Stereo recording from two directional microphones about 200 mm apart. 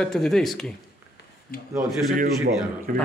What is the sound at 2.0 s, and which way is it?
Speech, 45° right (ahead or behind).